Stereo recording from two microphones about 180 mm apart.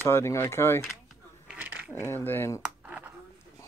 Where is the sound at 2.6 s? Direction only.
10° right (ahead or behind).